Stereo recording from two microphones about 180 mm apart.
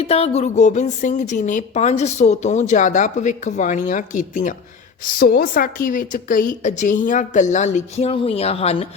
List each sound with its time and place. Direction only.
0.0 s a woman's voice: 35° left (ahead or behind)